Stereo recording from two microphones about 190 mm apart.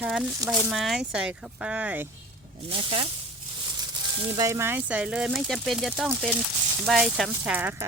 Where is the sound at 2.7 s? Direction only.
30° right (ahead or behind).